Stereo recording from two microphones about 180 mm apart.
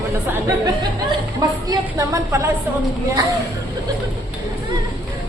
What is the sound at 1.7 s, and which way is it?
Speech, 20° right (ahead or behind).